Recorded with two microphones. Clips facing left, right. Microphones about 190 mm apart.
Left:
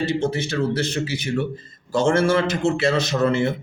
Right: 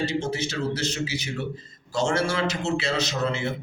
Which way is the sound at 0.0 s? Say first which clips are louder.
Left 4 dB; 55° left (ahead or behind).